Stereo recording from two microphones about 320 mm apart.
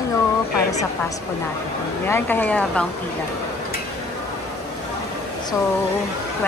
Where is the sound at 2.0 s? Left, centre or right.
Centre.